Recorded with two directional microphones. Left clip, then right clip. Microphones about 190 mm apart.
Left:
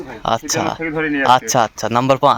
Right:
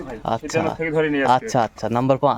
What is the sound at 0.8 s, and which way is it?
Speech, 50° right (ahead or behind).